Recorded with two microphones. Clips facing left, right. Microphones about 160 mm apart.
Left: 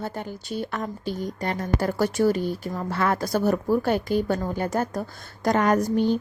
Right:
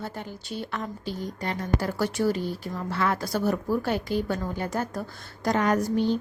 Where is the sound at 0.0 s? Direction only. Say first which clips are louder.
Left 4 dB; 45° left (ahead or behind).